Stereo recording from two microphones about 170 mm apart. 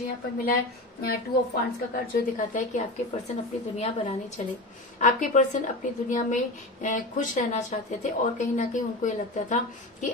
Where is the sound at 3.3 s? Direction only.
40° left (ahead or behind).